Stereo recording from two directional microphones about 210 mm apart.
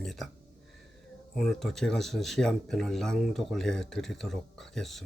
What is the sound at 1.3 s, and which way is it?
Speech, centre (ahead or behind).